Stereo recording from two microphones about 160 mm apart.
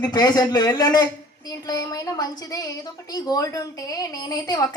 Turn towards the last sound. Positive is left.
turn(degrees=25)  # may be behind; listen again after turning